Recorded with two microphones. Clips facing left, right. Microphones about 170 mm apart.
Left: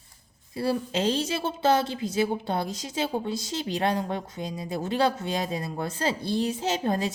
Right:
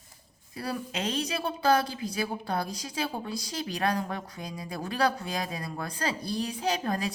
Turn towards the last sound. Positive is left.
turn(degrees=25)  # may be behind; listen again after turning